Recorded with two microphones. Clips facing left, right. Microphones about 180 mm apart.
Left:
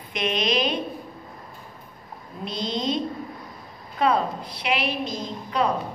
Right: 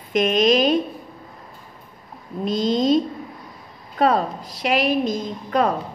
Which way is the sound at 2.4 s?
45° right (ahead or behind).